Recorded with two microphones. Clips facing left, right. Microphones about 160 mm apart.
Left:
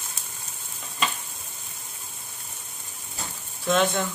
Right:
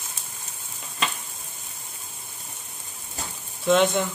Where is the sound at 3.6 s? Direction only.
15° right (ahead or behind).